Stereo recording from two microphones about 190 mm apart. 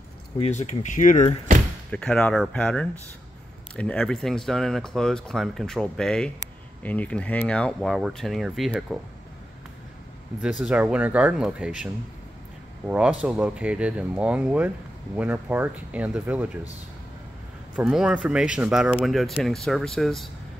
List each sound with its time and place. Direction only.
0.4 s speech: 35° left (ahead or behind)
1.9 s speech: 5° left (ahead or behind)
10.6 s speech: 5° right (ahead or behind)
17.7 s speech: 5° right (ahead or behind)